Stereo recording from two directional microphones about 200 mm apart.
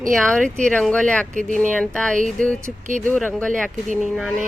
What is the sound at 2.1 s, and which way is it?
Speech, 40° right (ahead or behind).